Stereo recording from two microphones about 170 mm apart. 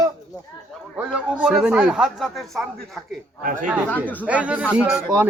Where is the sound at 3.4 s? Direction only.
55° right (ahead or behind).